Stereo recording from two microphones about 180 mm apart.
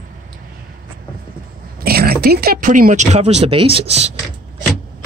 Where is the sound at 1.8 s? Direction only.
60° right (ahead or behind); by 4.1 s 35° right (ahead or behind).